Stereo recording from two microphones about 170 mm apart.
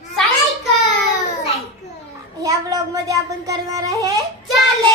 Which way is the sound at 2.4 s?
20° right (ahead or behind).